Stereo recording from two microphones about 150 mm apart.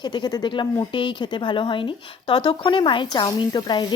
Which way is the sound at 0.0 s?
30° left (ahead or behind).